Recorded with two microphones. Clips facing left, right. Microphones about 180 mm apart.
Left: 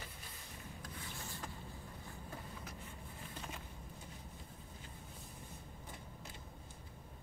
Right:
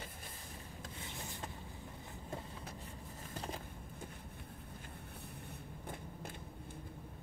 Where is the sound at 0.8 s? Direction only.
25° right (ahead or behind).